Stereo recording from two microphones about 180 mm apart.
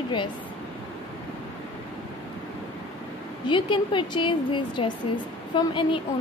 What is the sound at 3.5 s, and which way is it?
Speech, 25° left (ahead or behind).